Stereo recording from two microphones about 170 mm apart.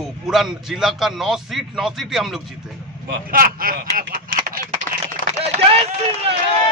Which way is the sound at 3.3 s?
60° right (ahead or behind).